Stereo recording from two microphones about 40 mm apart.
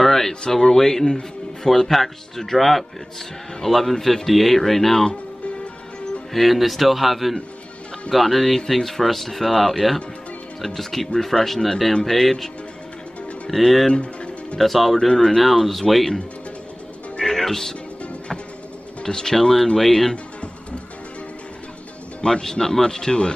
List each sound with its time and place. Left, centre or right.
0.0 s a sound: centre
0.5 s speech: centre
6.3 s speech: centre
13.5 s speech: centre
17.2 s music: centre
19.0 s speech: centre
22.2 s speech: centre